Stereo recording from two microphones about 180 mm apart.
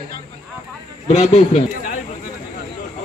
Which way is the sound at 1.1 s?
35° left (ahead or behind).